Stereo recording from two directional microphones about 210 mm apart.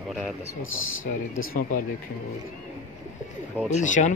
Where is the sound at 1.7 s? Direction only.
40° left (ahead or behind).